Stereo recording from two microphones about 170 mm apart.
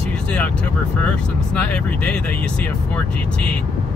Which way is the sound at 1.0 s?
5° left (ahead or behind).